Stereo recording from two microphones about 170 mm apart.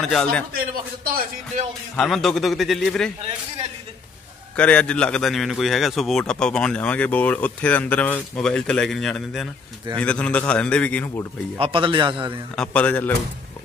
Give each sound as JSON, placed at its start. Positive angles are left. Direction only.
{"t": 0.0, "sound": "a man's voice", "side_deg": 5}
{"t": 2.0, "sound": "a man's voice", "side_deg": 0}
{"t": 3.2, "sound": "a man's voice", "side_deg": -35}
{"t": 4.6, "sound": "a man's voice", "side_deg": 5}
{"t": 11.5, "sound": "a man's voice", "side_deg": -30}
{"t": 12.5, "sound": "a man's voice", "side_deg": 5}